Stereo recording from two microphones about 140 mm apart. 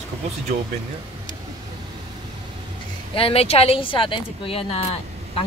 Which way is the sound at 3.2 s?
45° left (ahead or behind).